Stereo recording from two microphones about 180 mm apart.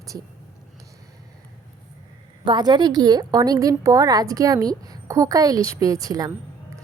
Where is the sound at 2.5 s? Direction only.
25° right (ahead or behind).